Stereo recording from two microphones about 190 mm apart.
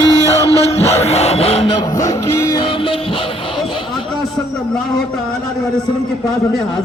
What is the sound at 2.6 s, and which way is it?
Music, 30° left (ahead or behind).